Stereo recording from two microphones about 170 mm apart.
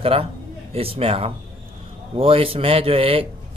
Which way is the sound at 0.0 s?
35° right (ahead or behind).